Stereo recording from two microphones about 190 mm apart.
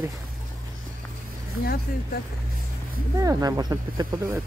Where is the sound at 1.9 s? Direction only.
50° left (ahead or behind).